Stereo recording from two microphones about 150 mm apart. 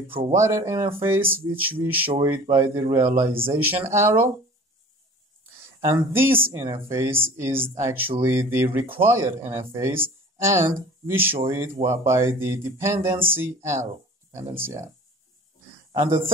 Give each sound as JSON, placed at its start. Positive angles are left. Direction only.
{"t": 0.4, "sound": "a man's voice", "side_deg": -20}
{"t": 5.8, "sound": "a man's voice", "side_deg": -15}
{"t": 15.9, "sound": "speech", "side_deg": -30}